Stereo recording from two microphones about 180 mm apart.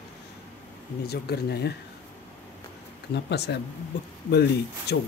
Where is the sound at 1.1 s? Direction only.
65° left (ahead or behind).